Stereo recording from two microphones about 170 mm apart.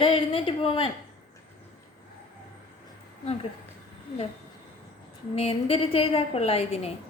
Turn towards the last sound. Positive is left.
turn(degrees=35)  # may be behind; listen again after turning